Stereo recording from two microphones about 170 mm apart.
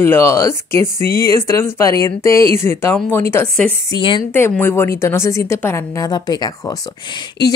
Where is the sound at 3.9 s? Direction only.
30° left (ahead or behind).